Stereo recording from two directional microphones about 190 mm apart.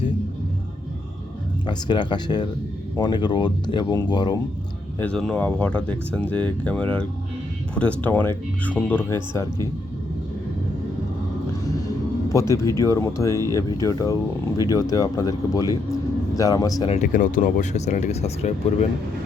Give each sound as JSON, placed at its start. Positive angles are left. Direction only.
{"t": 1.6, "sound": "speech", "side_deg": 25}
{"t": 4.9, "sound": "speech", "side_deg": 5}
{"t": 12.3, "sound": "speech", "side_deg": 15}
{"t": 16.9, "sound": "speech", "side_deg": 40}